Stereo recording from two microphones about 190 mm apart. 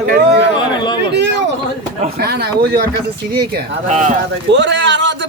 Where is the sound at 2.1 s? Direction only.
55° right (ahead or behind).